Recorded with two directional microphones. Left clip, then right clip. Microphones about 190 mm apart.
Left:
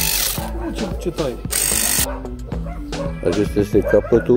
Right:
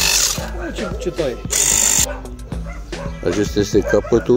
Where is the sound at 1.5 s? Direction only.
50° left (ahead or behind).